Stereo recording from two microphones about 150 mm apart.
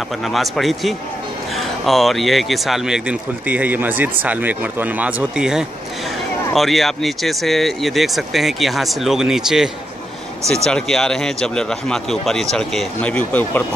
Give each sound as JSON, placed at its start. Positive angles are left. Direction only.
{"t": 0.2, "sound": "speech", "side_deg": 0}